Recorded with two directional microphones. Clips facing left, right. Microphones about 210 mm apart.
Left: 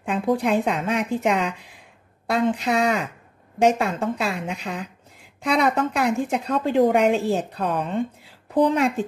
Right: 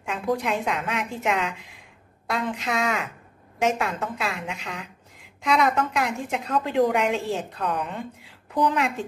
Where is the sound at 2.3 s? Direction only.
35° left (ahead or behind).